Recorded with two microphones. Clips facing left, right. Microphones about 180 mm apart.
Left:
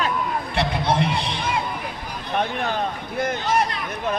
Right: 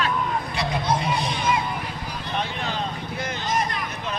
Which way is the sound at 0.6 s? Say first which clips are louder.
Left 4 dB; 65° left (ahead or behind).